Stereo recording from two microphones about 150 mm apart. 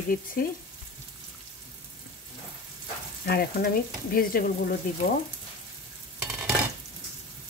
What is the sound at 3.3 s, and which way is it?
Speech, 90° left.